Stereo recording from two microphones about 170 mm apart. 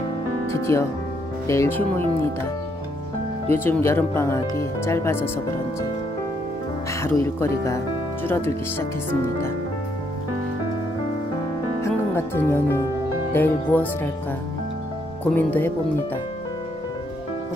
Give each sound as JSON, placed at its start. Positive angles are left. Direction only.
{"t": 0.5, "sound": "speech", "side_deg": 15}
{"t": 3.4, "sound": "speech", "side_deg": 10}
{"t": 6.9, "sound": "speech", "side_deg": 15}
{"t": 11.8, "sound": "speech", "side_deg": 15}
{"t": 15.3, "sound": "speech", "side_deg": 10}